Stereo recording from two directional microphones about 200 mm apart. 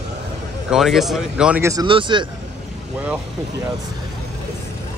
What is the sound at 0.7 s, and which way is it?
Speech, centre (ahead or behind).